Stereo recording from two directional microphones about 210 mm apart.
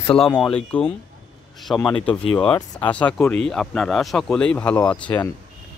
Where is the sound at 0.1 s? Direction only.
25° left (ahead or behind).